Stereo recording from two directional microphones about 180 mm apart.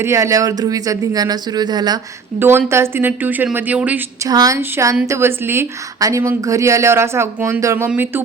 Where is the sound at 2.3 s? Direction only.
10° right (ahead or behind).